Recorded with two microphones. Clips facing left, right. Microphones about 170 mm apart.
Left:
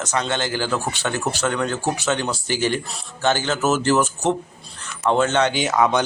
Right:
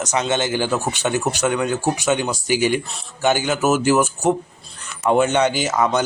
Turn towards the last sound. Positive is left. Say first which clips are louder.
# even
turn(degrees=0)  # may be behind; listen again after turning